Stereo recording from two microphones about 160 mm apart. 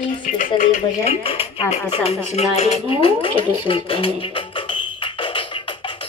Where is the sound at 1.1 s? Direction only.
35° left (ahead or behind).